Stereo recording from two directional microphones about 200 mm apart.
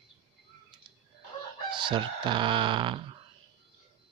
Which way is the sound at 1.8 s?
25° right (ahead or behind).